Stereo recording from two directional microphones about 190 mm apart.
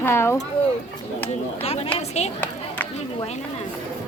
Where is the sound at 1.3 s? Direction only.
30° left (ahead or behind).